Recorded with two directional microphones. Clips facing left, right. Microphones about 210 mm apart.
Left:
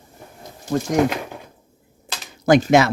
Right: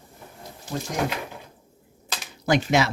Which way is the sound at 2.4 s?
45° left (ahead or behind).